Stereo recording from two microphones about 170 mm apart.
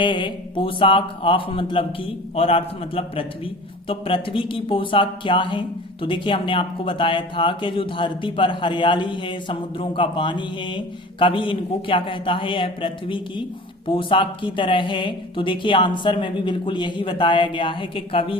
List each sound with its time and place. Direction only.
0.0 s speech: 30° left (ahead or behind)